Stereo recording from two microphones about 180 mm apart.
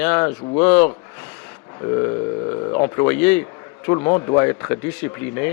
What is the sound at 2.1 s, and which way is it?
Speech, 25° left (ahead or behind).